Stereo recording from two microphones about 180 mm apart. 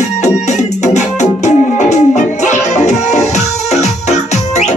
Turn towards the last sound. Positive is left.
turn(degrees=40)  # may be behind; listen again after turning